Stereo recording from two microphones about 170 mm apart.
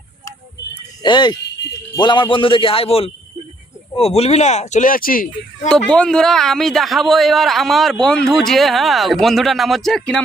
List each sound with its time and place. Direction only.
1.0 s a man's voice: 25° left (ahead or behind); by 5.3 s 55° left (ahead or behind)
5.6 s speech: 5° left (ahead or behind)